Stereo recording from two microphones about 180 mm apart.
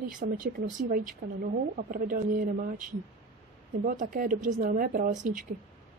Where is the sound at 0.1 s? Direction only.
45° right (ahead or behind).